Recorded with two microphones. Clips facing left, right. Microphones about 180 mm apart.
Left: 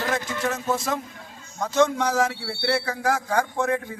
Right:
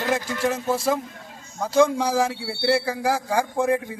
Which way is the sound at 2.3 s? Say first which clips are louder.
Right 3 dB; centre (ahead or behind).